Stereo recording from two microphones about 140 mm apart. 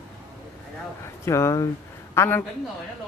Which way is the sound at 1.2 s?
20° left (ahead or behind).